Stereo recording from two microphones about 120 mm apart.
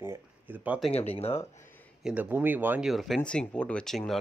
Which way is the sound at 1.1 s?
55° left (ahead or behind).